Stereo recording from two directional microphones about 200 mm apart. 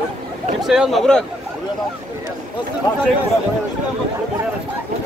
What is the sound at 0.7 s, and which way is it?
Speech, centre (ahead or behind).